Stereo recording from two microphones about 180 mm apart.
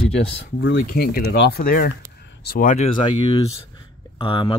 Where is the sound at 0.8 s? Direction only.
55° left (ahead or behind).